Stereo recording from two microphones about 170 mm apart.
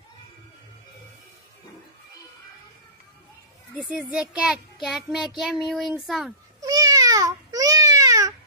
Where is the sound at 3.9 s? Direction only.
5° right (ahead or behind).